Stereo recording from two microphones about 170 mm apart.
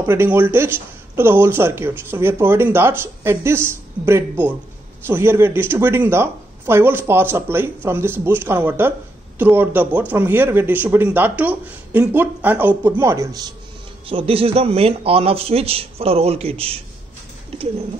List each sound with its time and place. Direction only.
0.0 s speech: 15° right (ahead or behind)
14.0 s a man's voice: 35° right (ahead or behind)